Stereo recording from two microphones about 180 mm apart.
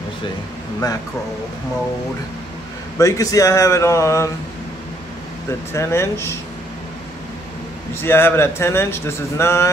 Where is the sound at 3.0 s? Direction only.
20° left (ahead or behind).